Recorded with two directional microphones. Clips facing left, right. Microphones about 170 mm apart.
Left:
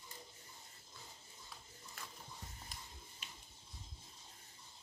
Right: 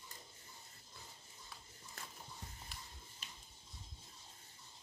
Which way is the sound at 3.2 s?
35° right (ahead or behind).